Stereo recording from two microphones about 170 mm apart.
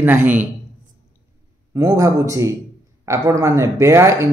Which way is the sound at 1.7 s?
15° right (ahead or behind).